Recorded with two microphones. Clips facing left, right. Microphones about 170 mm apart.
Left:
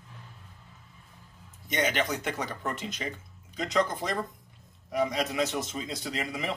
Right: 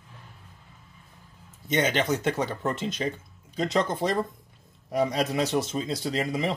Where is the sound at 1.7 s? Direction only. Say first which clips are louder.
Right 4 dB; 25° right (ahead or behind).